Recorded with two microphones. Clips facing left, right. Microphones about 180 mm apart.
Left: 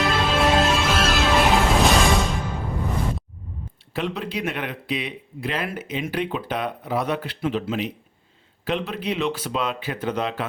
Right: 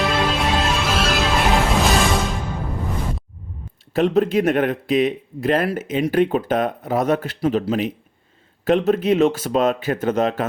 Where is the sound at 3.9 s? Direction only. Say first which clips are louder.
Right 11 dB; 45° right (ahead or behind).